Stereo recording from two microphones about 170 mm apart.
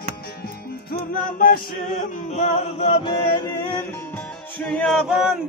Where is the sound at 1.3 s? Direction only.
55° left (ahead or behind).